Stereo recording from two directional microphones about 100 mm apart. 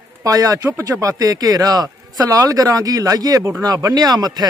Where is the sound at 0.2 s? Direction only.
35° right (ahead or behind).